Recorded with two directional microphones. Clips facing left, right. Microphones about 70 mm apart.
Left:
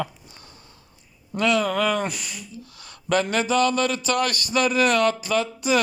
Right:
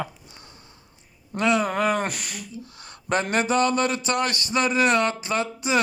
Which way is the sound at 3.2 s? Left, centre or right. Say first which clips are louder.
Right 2 dB; right.